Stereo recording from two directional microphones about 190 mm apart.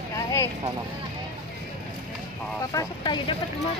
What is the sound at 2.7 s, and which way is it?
Speech, 25° left (ahead or behind).